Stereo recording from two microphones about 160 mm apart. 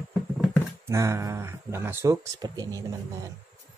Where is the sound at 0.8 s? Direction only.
20° right (ahead or behind).